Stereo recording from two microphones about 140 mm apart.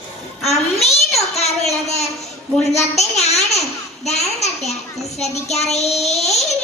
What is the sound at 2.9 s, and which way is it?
A child's voice, 50° left (ahead or behind).